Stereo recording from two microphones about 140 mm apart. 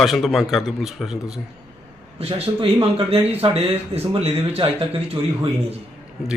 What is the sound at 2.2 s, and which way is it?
Speech, 45° right (ahead or behind).